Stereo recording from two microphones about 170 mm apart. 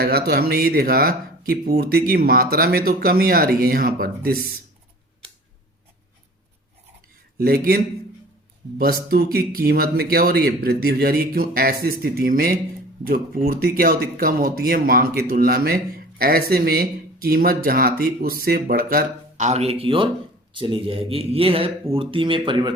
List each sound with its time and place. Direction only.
0.0 s speech: 65° right (ahead or behind)
7.3 s speech: 65° right (ahead or behind)
8.8 s speech: 60° right (ahead or behind); by 22.7 s 30° right (ahead or behind)